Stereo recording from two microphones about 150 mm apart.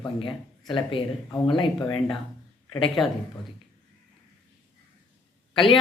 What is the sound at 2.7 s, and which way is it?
Speech, 35° left (ahead or behind).